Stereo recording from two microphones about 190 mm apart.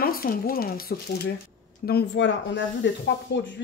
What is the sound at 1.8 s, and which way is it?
Speech, 65° left (ahead or behind).